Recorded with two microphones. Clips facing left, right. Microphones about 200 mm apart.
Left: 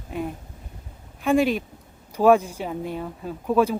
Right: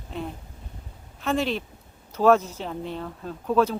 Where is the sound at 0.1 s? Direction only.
10° left (ahead or behind).